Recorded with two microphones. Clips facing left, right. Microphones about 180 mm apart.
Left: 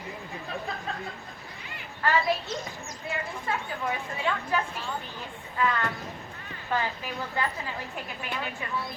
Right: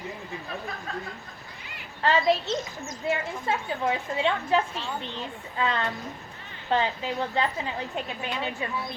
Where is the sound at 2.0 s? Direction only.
25° right (ahead or behind).